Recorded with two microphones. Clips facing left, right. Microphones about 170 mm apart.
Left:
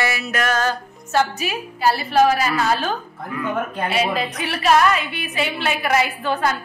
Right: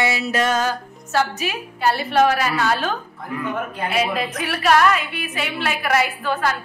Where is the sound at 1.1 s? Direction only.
Centre (ahead or behind).